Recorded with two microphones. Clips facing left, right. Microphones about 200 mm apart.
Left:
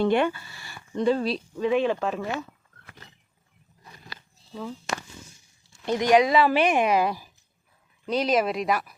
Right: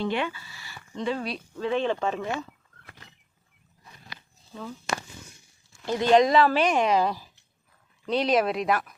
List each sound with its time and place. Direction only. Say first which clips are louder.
0.0 s speech: left 6 dB; 50° left (ahead or behind)
1.0 s speech: left 6 dB; 35° left (ahead or behind)
1.5 s speech: left 2 dB; 10° left (ahead or behind)
5.8 s speech: even; 20° left (ahead or behind)
8.0 s speech: even; centre (ahead or behind)